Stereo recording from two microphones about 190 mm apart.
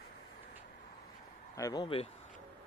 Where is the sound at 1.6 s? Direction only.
20° left (ahead or behind).